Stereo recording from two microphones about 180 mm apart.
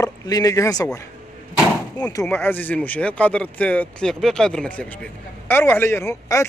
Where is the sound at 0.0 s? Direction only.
20° left (ahead or behind).